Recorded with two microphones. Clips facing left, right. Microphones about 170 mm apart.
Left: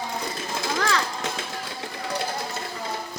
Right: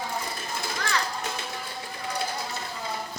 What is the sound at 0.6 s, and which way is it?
Children playing, 90° left.